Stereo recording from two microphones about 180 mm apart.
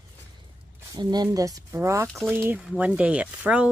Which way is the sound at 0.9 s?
25° right (ahead or behind).